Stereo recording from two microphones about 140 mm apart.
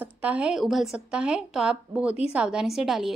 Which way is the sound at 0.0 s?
10° right (ahead or behind).